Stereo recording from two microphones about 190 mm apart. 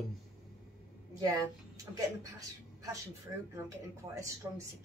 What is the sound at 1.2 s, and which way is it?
A woman's voice, 20° right (ahead or behind).